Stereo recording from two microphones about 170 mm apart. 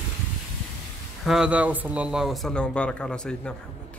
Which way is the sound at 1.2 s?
5° right (ahead or behind).